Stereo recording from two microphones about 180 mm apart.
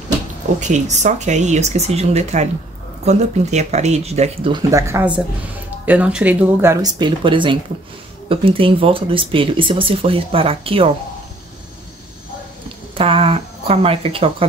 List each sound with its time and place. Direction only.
0.6 s speech: 40° right (ahead or behind)
4.6 s speech: 15° right (ahead or behind)
12.9 s a sound: 30° right (ahead or behind)